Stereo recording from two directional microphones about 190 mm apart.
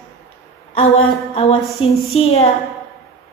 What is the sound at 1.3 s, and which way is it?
A woman's voice, 30° left (ahead or behind).